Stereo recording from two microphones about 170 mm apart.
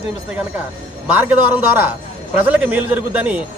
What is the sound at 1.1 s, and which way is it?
A man's voice, 10° right (ahead or behind).